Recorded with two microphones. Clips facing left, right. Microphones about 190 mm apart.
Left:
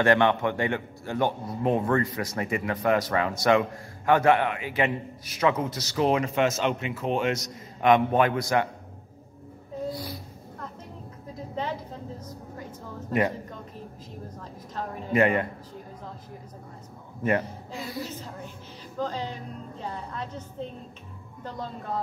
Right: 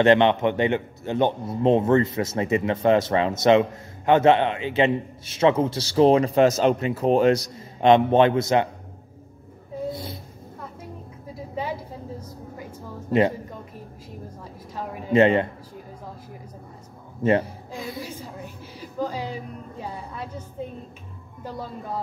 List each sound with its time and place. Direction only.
0.0 s speech: 20° right (ahead or behind)
9.8 s a sound: 25° right (ahead or behind)
11.3 s vehicle: 10° right (ahead or behind)
14.7 s a woman's voice: 10° right (ahead or behind)
15.1 s speech: 25° right (ahead or behind)
17.4 s a woman's voice: 10° right (ahead or behind)